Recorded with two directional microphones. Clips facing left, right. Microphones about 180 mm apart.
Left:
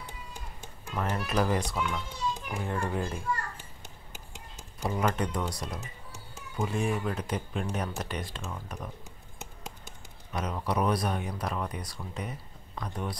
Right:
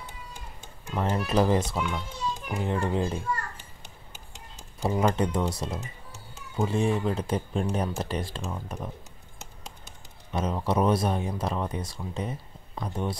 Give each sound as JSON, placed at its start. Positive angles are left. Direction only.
{"t": 0.9, "sound": "speech", "side_deg": -25}
{"t": 4.8, "sound": "speech", "side_deg": -30}
{"t": 10.3, "sound": "speech", "side_deg": -25}